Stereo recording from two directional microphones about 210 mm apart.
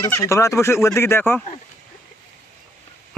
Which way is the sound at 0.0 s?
15° left (ahead or behind).